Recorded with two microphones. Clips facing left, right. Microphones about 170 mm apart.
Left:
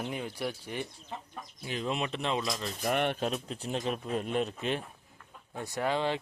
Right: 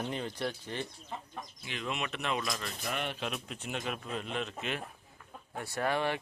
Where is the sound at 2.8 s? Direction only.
55° left (ahead or behind).